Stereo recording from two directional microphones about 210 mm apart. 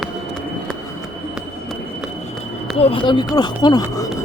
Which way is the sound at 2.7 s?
25° left (ahead or behind).